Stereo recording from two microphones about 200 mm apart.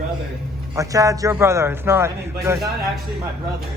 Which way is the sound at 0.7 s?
15° right (ahead or behind).